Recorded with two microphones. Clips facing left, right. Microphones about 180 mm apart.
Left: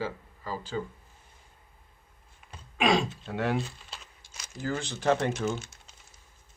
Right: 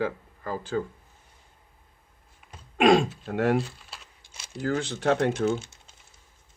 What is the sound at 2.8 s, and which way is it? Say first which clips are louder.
Speech: right 6 dB; 50° right (ahead or behind).